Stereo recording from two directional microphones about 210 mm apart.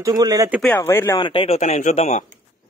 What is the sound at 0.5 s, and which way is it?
Speech, 5° left (ahead or behind).